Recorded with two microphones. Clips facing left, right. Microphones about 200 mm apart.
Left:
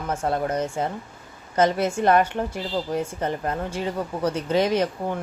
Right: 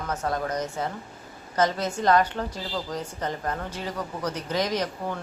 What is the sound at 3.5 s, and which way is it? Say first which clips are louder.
Speech: left 4 dB; 25° left (ahead or behind).